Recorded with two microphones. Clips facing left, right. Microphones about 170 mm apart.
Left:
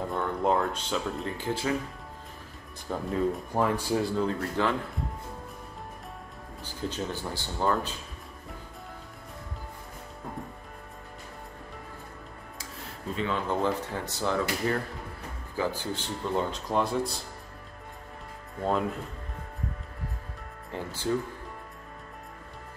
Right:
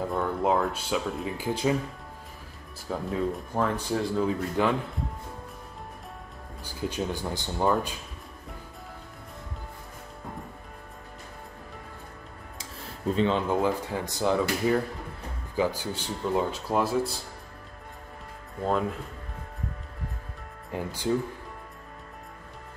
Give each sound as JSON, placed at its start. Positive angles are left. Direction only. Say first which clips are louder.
{"t": 0.0, "sound": "speech", "louder": "right 1 dB", "side_deg": 0}
{"t": 2.9, "sound": "speech", "louder": "left 1 dB", "side_deg": 0}
{"t": 4.6, "sound": "speech", "louder": "right 3 dB", "side_deg": -15}
{"t": 6.6, "sound": "speech", "louder": "right 2 dB", "side_deg": -10}
{"t": 13.1, "sound": "speech", "louder": "right 6 dB", "side_deg": -30}
{"t": 13.5, "sound": "speech", "louder": "right 2 dB", "side_deg": -10}
{"t": 18.6, "sound": "speech", "louder": "right 1 dB", "side_deg": 0}
{"t": 20.7, "sound": "speech", "louder": "right 3 dB", "side_deg": -15}